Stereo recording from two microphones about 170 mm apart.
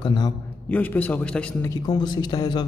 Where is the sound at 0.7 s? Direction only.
10° left (ahead or behind).